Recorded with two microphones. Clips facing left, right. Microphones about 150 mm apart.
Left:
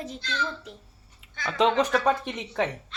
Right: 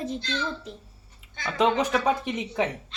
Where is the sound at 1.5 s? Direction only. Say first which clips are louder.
Even; 5° right (ahead or behind).